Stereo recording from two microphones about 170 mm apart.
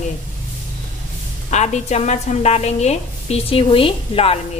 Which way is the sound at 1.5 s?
40° left (ahead or behind).